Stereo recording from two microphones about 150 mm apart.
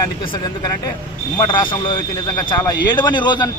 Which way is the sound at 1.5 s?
30° left (ahead or behind).